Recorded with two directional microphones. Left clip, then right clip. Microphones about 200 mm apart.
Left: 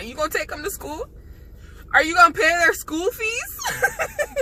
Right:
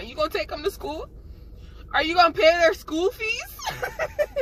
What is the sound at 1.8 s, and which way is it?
Speech, 10° left (ahead or behind).